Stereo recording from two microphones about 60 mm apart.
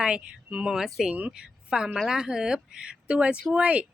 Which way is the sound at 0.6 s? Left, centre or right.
Centre.